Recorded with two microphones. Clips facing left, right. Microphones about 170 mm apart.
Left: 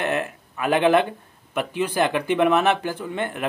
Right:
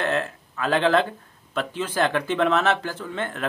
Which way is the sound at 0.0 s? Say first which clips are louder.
Even; 15° left (ahead or behind).